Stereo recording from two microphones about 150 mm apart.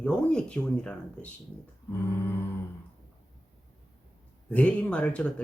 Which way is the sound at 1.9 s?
20° left (ahead or behind).